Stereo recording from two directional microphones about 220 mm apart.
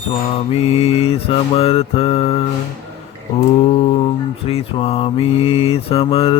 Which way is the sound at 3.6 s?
25° left (ahead or behind).